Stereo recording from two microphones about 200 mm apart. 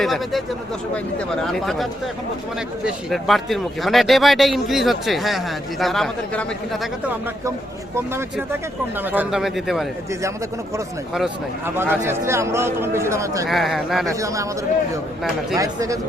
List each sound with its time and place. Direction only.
0.0 s a man's voice: centre (ahead or behind)
9.0 s a man's voice: 5° right (ahead or behind)
11.1 s speech: 5° right (ahead or behind)
13.5 s a man's voice: centre (ahead or behind)
14.1 s speech: 15° right (ahead or behind)
15.5 s speech: 15° right (ahead or behind)